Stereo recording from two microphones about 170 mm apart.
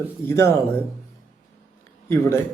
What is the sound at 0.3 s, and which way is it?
Speech, 15° left (ahead or behind).